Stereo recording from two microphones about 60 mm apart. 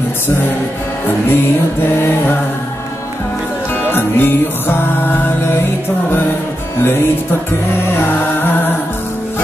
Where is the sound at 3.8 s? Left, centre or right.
Left.